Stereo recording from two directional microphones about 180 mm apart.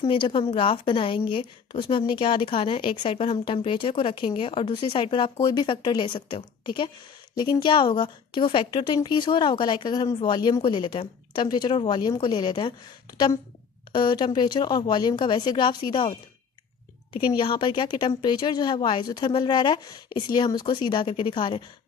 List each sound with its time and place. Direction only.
0.0 s a woman's voice: 30° left (ahead or behind)
13.9 s a woman's voice: 25° left (ahead or behind)